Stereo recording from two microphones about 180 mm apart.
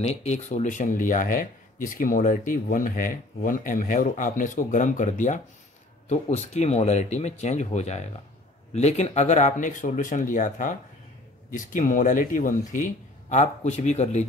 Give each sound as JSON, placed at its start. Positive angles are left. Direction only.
{"t": 0.0, "sound": "speech", "side_deg": 40}